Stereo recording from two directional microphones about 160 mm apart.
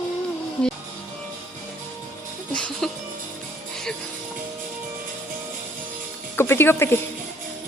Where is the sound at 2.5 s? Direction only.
5° left (ahead or behind).